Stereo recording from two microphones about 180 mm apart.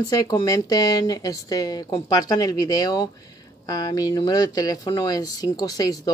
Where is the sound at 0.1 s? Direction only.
20° left (ahead or behind).